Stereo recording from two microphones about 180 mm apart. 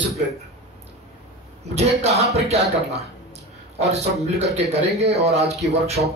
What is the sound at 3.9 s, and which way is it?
Speech, 35° right (ahead or behind).